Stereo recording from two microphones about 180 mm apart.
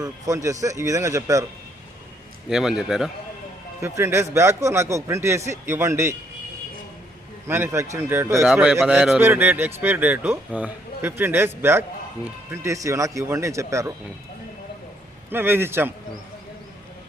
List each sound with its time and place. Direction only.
0.0 s a man's voice: 20° right (ahead or behind)
2.5 s a man's voice: 5° right (ahead or behind)
3.8 s a man's voice: 15° right (ahead or behind)
7.4 s a man's voice: 15° right (ahead or behind)
15.3 s a man's voice: 10° right (ahead or behind)